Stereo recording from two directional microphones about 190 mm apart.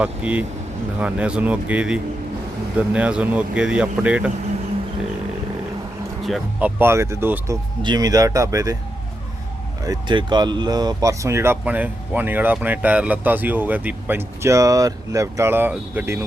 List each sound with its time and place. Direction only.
0.0 s speech: 5° right (ahead or behind)
6.2 s speech: 5° right (ahead or behind)
9.8 s speech: 20° right (ahead or behind)